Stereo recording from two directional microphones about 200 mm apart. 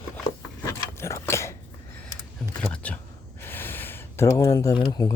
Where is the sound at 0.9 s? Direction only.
15° left (ahead or behind).